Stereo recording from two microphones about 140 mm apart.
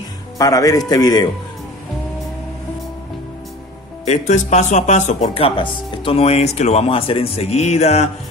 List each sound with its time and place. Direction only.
0.4 s speech: 25° left (ahead or behind)
4.0 s speech: 55° left (ahead or behind)